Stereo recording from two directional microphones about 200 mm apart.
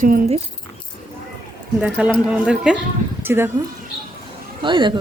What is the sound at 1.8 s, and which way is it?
A man's voice, 5° right (ahead or behind).